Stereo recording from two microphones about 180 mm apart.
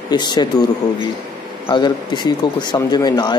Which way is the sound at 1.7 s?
25° left (ahead or behind).